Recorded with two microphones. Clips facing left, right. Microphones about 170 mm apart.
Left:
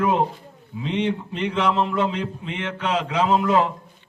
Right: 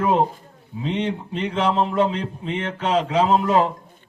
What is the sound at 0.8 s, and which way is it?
Speech, 35° right (ahead or behind).